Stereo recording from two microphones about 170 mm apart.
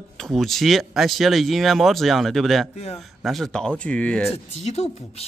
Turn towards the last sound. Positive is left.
turn(degrees=35)  # may be behind; listen again after turning